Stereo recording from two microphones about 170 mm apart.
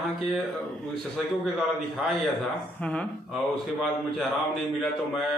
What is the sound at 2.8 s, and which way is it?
Speech, 5° left (ahead or behind).